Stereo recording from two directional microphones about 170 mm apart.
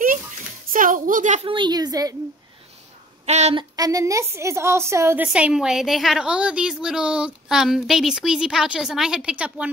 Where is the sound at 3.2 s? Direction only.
40° right (ahead or behind).